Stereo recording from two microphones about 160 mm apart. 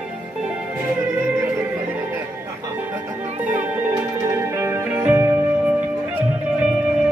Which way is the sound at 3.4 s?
10° right (ahead or behind).